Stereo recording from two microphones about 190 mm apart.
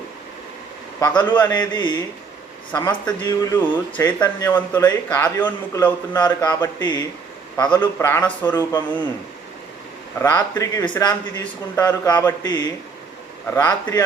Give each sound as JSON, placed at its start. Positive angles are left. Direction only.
{"t": 0.9, "sound": "a man's voice", "side_deg": 20}
{"t": 10.2, "sound": "speech", "side_deg": 15}
{"t": 13.6, "sound": "speech", "side_deg": 20}